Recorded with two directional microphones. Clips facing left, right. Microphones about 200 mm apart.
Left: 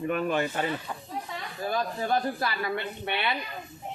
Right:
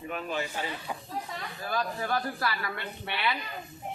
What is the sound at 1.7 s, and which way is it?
Speech, 25° left (ahead or behind).